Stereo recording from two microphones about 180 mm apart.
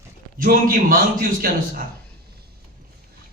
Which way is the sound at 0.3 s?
50° right (ahead or behind).